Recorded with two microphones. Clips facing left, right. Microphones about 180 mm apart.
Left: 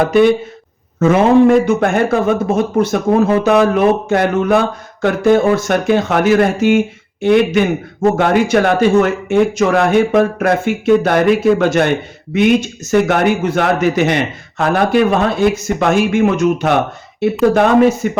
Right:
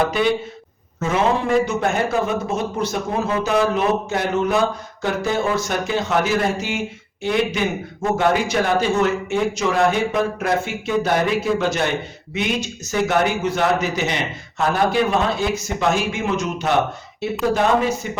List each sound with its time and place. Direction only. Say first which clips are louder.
0.0 s speech: left 8 dB; 50° left (ahead or behind)